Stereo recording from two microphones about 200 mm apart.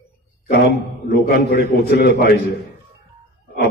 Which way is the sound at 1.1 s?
50° left (ahead or behind).